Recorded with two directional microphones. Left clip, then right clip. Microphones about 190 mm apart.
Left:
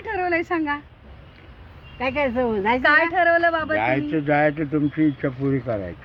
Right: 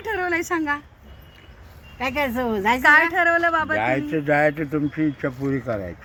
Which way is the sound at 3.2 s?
Centre (ahead or behind).